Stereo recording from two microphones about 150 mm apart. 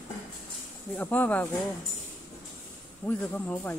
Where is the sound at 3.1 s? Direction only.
10° left (ahead or behind).